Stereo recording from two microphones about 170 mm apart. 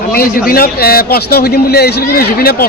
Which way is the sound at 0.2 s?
60° left (ahead or behind).